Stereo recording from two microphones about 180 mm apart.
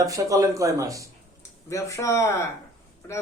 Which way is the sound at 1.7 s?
15° left (ahead or behind).